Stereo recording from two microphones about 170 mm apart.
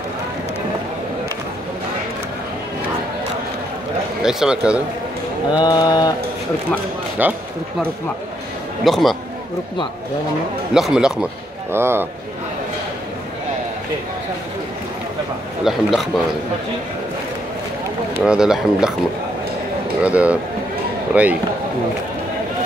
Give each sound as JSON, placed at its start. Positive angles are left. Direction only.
{"t": 4.2, "sound": "speech", "side_deg": -5}
{"t": 5.6, "sound": "mantra", "side_deg": 25}
{"t": 7.2, "sound": "speech", "side_deg": -10}
{"t": 8.8, "sound": "speech", "side_deg": 0}
{"t": 10.7, "sound": "speech", "side_deg": -5}
{"t": 15.6, "sound": "speech", "side_deg": 0}
{"t": 18.2, "sound": "speech", "side_deg": -5}
{"t": 20.0, "sound": "speech", "side_deg": -5}